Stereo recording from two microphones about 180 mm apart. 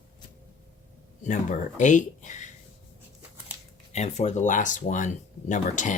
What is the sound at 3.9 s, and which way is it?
Speech, 40° left (ahead or behind).